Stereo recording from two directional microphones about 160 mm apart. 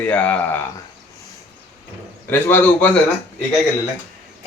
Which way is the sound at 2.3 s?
10° left (ahead or behind).